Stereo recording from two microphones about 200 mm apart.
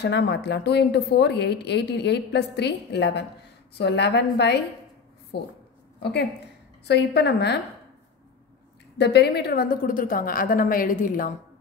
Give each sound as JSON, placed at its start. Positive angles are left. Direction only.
{"t": 0.0, "sound": "a woman's voice", "side_deg": 55}
{"t": 6.9, "sound": "a woman's voice", "side_deg": 55}
{"t": 8.9, "sound": "a woman's voice", "side_deg": 55}